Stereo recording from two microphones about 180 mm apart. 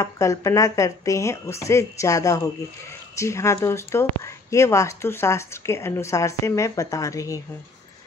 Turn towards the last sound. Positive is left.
turn(degrees=15)  # may be behind; listen again after turning